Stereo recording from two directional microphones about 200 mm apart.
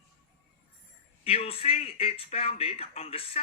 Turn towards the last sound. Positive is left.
turn(degrees=30)  # may be behind; listen again after turning